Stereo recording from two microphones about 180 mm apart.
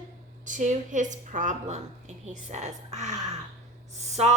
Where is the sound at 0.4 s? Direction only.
45° right (ahead or behind).